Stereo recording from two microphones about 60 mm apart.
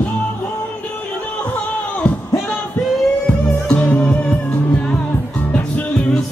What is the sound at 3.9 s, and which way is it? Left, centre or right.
Music, left.